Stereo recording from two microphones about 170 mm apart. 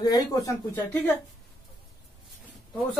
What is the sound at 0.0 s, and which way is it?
Speech, 20° left (ahead or behind).